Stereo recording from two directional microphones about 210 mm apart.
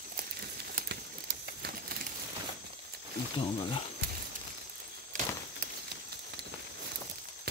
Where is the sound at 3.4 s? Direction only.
25° left (ahead or behind).